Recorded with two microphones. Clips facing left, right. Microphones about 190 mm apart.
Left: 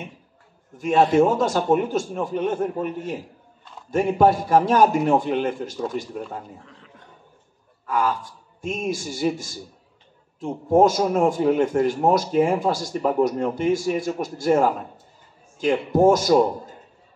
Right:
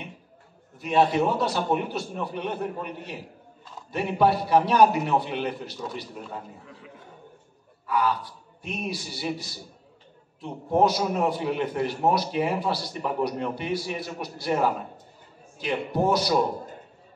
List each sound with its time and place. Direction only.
0.7 s speech: 45° left (ahead or behind)
6.6 s a man's voice: 5° right (ahead or behind)
7.8 s a man's voice: 45° left (ahead or behind)